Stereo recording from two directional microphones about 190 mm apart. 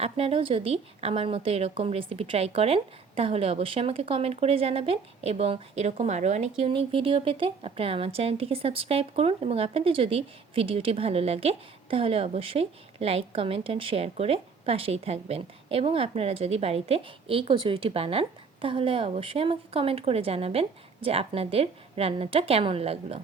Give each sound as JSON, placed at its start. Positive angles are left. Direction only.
{"t": 0.0, "sound": "speech", "side_deg": -30}